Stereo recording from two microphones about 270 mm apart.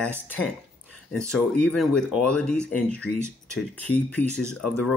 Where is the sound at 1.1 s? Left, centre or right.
Centre.